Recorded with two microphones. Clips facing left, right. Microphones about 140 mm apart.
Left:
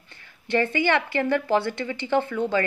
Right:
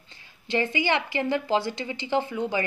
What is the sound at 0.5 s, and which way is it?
A woman's voice, 15° right (ahead or behind).